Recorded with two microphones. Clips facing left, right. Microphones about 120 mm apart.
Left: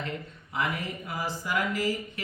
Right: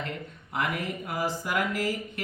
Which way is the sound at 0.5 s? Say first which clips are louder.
Right 1 dB; 55° right (ahead or behind).